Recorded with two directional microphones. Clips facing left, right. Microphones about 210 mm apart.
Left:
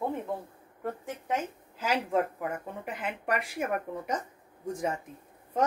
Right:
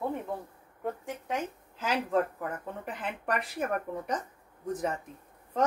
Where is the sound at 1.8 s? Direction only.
10° left (ahead or behind).